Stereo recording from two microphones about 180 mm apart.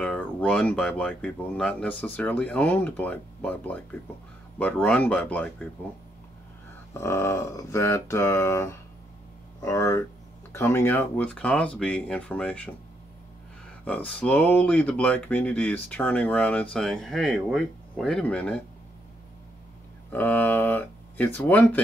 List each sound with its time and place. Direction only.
0.0 s speech: 5° left (ahead or behind)
6.9 s speech: 15° left (ahead or behind)
13.8 s speech: 5° left (ahead or behind)
20.1 s speech: 10° left (ahead or behind)